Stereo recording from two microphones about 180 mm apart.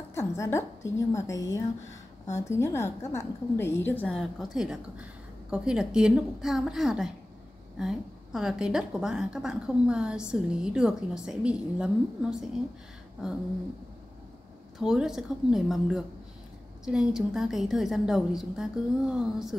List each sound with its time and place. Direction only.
0.1 s a woman's voice: 15° left (ahead or behind); by 12.4 s 5° right (ahead or behind)
14.8 s a woman's voice: 5° right (ahead or behind)